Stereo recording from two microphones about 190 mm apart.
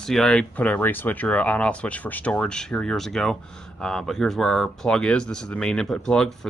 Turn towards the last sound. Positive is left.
turn(degrees=5)  # may be behind; listen again after turning